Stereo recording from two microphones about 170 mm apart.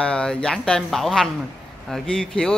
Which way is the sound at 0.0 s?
5° left (ahead or behind).